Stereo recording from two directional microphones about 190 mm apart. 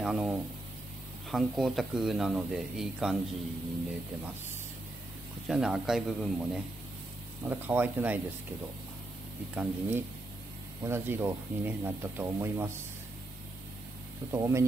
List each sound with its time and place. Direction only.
0.0 s speech: 5° right (ahead or behind)
5.5 s speech: centre (ahead or behind)
9.6 s speech: 10° right (ahead or behind)
14.3 s speech: 15° right (ahead or behind)